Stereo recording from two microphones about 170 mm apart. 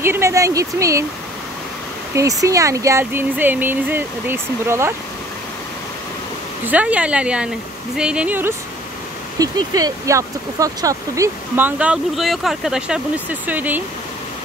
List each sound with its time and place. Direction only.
0.0 s speech: 15° right (ahead or behind)
2.1 s speech: 20° right (ahead or behind)
6.6 s speech: 10° right (ahead or behind)
9.4 s speech: 20° right (ahead or behind)